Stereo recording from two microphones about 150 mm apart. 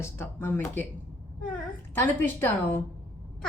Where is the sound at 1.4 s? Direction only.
5° left (ahead or behind).